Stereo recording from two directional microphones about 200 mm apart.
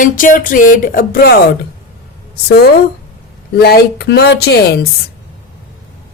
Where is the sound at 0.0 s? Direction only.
40° left (ahead or behind).